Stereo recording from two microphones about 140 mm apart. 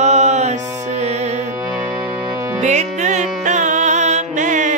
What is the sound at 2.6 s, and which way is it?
Music, 55° right (ahead or behind).